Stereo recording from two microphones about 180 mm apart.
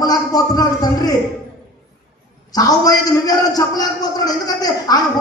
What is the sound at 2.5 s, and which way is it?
Speech, 20° left (ahead or behind).